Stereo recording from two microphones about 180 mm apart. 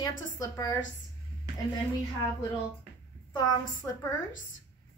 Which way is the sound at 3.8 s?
10° left (ahead or behind).